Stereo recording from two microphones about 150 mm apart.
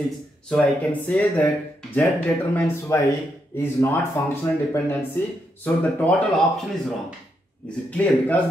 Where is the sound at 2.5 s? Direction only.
20° left (ahead or behind).